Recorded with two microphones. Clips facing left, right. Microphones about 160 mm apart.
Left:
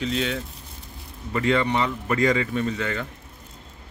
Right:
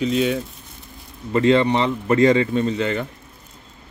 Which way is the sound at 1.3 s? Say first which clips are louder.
Right 6 dB; 30° right (ahead or behind).